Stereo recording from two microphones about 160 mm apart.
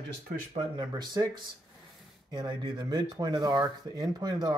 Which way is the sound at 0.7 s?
25° right (ahead or behind).